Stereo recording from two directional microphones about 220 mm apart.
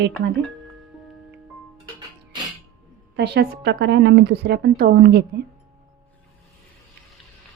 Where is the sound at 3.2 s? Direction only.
50° right (ahead or behind).